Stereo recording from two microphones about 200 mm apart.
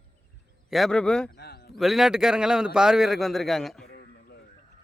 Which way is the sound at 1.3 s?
55° left (ahead or behind).